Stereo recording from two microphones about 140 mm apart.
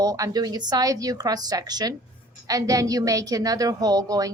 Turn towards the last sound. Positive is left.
turn(degrees=-25)  # may be behind; listen again after turning